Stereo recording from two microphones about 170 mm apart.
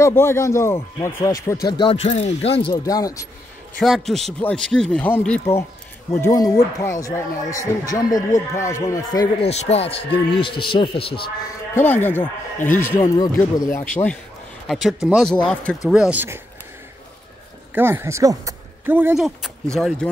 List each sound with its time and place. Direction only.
0.0 s speech: 15° left (ahead or behind)
2.0 s a man's voice: 40° left (ahead or behind)
2.7 s speech: 20° left (ahead or behind)
3.8 s speech: centre (ahead or behind); by 9.3 s 20° left (ahead or behind)
9.4 s a man's voice: 35° left (ahead or behind)
11.7 s speech: 10° left (ahead or behind)
14.7 s speech: centre (ahead or behind)
17.7 s speech: 15° right (ahead or behind)
19.1 s speech: centre (ahead or behind)